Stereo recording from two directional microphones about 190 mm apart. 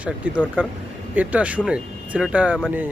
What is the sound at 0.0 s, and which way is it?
Speech, 5° right (ahead or behind).